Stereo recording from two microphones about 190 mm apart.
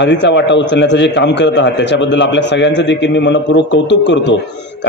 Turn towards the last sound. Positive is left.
turn(degrees=65)  # may be behind; listen again after turning